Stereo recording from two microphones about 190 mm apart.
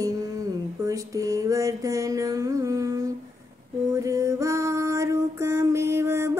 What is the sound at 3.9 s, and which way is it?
Music, 15° right (ahead or behind).